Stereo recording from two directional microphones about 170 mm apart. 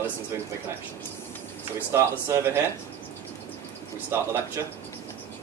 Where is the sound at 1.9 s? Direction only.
15° right (ahead or behind).